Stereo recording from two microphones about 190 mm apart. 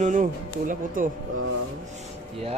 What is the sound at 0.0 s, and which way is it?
Speech, 45° right (ahead or behind).